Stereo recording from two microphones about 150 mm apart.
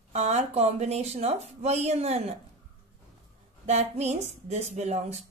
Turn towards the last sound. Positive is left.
turn(degrees=-50)  # may be behind; listen again after turning